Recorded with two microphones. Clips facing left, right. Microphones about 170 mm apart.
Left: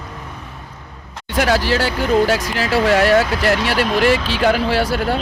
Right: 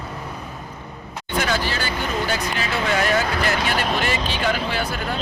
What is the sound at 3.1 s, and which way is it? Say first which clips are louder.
Speech: left 6 dB; 75° left (ahead or behind).